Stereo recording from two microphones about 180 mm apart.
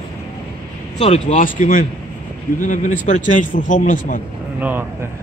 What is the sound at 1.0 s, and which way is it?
A man's voice, 40° left (ahead or behind).